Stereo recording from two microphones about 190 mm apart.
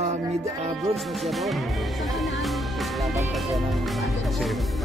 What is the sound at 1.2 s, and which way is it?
Speech, centre (ahead or behind).